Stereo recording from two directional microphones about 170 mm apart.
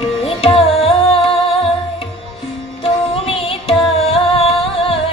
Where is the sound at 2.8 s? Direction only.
35° left (ahead or behind).